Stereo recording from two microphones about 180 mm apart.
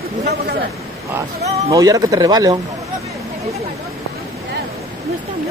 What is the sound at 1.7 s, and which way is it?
Speech, 20° right (ahead or behind).